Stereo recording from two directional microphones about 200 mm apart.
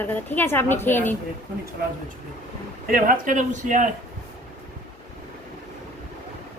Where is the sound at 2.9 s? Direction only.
45° right (ahead or behind).